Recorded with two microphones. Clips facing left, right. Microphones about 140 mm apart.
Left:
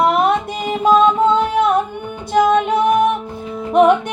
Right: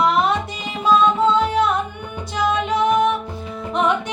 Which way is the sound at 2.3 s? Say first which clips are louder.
Left 7 dB; 55° left (ahead or behind).